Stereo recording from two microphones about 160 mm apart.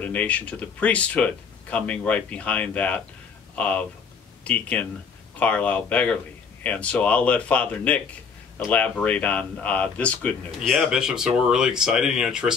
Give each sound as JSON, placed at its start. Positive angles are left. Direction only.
{"t": 0.0, "sound": "speech", "side_deg": 10}